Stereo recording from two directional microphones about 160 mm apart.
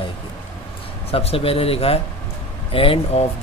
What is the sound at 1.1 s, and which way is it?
A man's voice, 40° left (ahead or behind).